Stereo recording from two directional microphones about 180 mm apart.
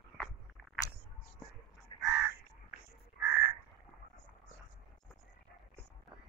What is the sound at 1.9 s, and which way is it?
Crow, 30° left (ahead or behind).